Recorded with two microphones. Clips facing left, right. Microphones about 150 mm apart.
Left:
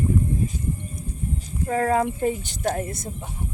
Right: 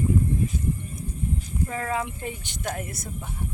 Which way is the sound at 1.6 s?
40° left (ahead or behind).